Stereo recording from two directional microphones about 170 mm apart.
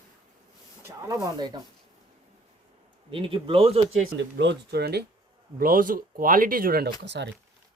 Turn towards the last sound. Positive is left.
turn(degrees=-90)